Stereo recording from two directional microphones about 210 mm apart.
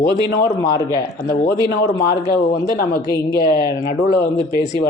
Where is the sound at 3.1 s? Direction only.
45° left (ahead or behind).